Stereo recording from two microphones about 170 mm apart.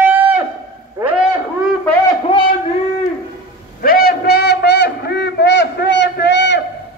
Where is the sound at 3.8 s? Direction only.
60° left (ahead or behind).